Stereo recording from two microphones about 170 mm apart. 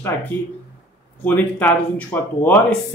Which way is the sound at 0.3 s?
10° left (ahead or behind).